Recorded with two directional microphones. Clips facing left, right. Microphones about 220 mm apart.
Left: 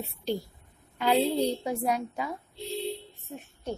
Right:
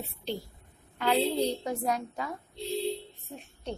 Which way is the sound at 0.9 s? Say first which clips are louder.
Left 2 dB; 15° left (ahead or behind).